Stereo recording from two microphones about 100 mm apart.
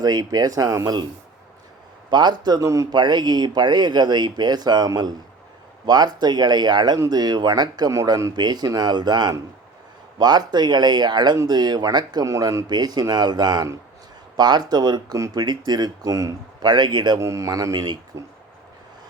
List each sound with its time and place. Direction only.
0.0 s speech: 40° right (ahead or behind)
2.0 s speech: 45° right (ahead or behind)
12.3 s speech: 35° right (ahead or behind)
16.6 s speech: 45° right (ahead or behind)
17.2 s speech: 30° right (ahead or behind)